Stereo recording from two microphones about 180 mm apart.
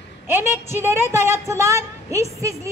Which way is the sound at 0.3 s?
15° right (ahead or behind).